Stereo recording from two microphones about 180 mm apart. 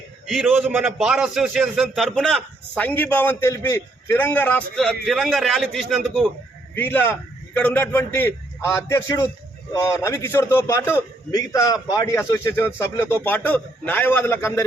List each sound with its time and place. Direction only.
0.6 s a man's voice: 5° right (ahead or behind); by 14.7 s 15° left (ahead or behind)